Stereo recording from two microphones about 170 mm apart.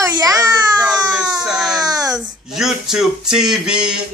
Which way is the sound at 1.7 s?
20° right (ahead or behind).